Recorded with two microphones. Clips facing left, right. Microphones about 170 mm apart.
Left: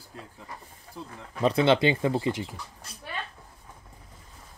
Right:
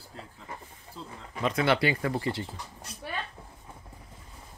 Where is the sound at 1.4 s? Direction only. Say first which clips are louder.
Left 4 dB; 30° left (ahead or behind).